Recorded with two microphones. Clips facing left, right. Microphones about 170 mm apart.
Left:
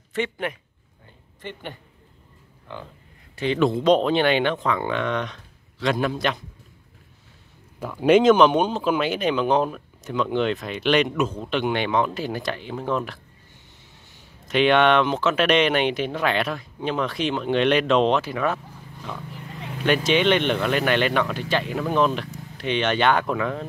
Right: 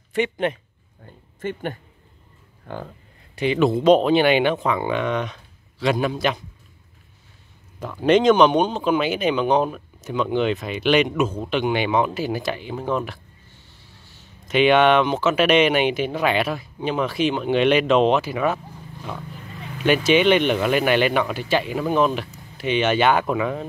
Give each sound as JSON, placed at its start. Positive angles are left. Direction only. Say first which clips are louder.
{"t": 0.1, "sound": "speech", "louder": "right 5 dB", "side_deg": -15}
{"t": 1.4, "sound": "speech", "louder": "right 8 dB", "side_deg": -50}
{"t": 3.3, "sound": "speech", "louder": "right 2 dB", "side_deg": -10}
{"t": 7.8, "sound": "speech", "louder": "even", "side_deg": 5}
{"t": 14.5, "sound": "speech", "louder": "right 2 dB", "side_deg": -5}
{"t": 19.8, "sound": "speech", "louder": "right 3 dB", "side_deg": -5}